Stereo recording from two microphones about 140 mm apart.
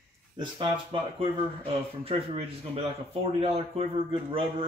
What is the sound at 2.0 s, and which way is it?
Speech, 40° right (ahead or behind).